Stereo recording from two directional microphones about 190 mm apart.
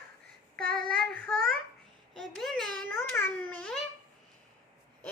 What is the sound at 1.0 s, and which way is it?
Child singing, centre (ahead or behind).